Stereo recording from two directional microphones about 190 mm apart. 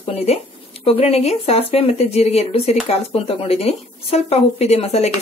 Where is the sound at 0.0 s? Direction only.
30° left (ahead or behind).